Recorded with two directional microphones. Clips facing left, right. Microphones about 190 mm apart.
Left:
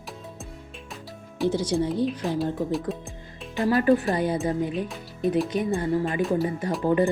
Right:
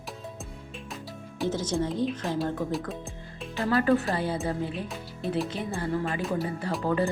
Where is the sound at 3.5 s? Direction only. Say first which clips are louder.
Left 3 dB; 15° left (ahead or behind).